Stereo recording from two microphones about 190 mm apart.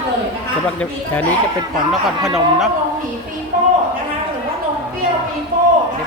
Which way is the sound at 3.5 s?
45° right (ahead or behind).